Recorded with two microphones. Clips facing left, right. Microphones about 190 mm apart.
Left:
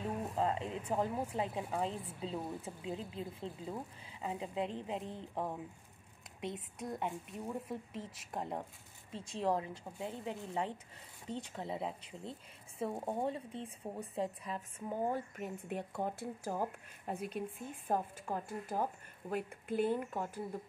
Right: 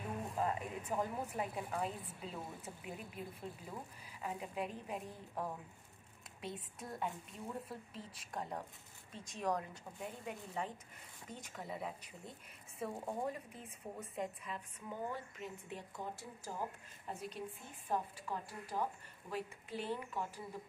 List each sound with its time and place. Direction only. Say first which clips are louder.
0.4 s a woman's voice: left 3 dB; 25° left (ahead or behind)
8.3 s a woman's voice: left 3 dB; 25° left (ahead or behind); by 20.4 s 50° left (ahead or behind)